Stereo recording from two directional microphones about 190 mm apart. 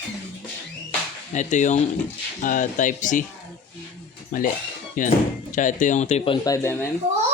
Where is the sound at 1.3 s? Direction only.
40° left (ahead or behind).